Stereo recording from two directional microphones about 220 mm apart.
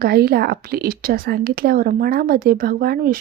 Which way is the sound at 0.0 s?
45° right (ahead or behind).